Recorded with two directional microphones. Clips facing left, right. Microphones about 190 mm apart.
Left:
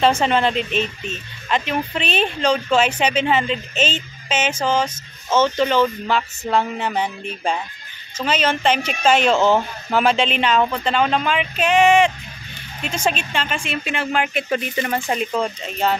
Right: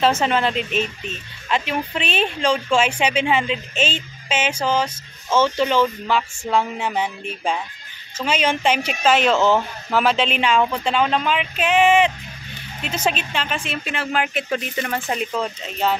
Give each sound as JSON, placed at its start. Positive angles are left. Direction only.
{"t": 0.0, "sound": "speech", "side_deg": -5}
{"t": 3.7, "sound": "speech", "side_deg": 40}
{"t": 4.4, "sound": "speech", "side_deg": -10}